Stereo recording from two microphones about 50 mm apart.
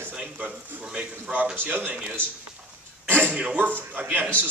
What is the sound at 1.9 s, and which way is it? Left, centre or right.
Speech, right.